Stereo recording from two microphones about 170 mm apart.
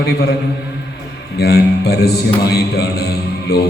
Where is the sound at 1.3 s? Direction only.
70° left (ahead or behind).